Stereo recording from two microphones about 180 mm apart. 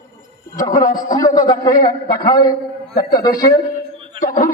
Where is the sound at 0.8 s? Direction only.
45° left (ahead or behind).